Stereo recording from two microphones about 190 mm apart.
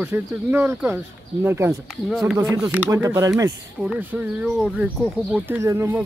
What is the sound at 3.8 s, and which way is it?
Speech, 5° right (ahead or behind).